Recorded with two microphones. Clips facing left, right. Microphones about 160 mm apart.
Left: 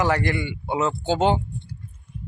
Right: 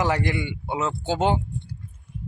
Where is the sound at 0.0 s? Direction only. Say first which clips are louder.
Left 2 dB; 15° right (ahead or behind).